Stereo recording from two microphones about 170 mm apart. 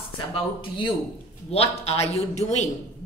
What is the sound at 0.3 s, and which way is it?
A man's voice, 30° left (ahead or behind).